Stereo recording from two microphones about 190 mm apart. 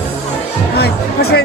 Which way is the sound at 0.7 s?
55° left (ahead or behind).